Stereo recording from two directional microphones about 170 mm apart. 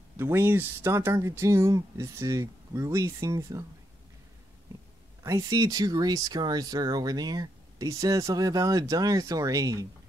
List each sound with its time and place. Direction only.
0.2 s speech: 15° right (ahead or behind)
5.2 s speech: 20° right (ahead or behind)